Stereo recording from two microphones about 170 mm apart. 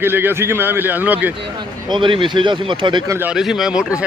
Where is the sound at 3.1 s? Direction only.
5° right (ahead or behind).